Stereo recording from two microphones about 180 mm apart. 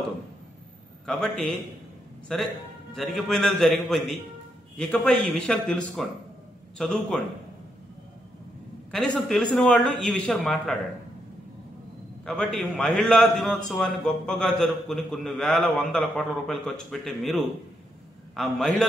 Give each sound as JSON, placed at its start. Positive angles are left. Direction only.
{"t": 1.0, "sound": "a man's voice", "side_deg": 0}
{"t": 8.9, "sound": "a man's voice", "side_deg": 5}
{"t": 12.3, "sound": "a man's voice", "side_deg": 0}